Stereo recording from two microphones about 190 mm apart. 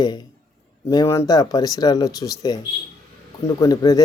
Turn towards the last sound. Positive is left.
turn(degrees=20)  # may be behind; listen again after turning